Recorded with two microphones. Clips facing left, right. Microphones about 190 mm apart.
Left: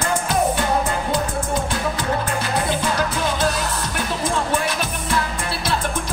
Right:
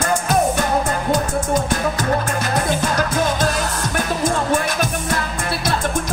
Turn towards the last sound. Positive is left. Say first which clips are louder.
# right 3 dB
turn(degrees=-45)  # may be behind; listen again after turning